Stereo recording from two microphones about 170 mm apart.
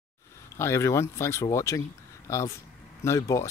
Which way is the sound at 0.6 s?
15° left (ahead or behind).